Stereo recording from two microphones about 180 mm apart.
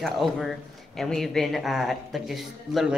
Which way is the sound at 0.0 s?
Centre (ahead or behind).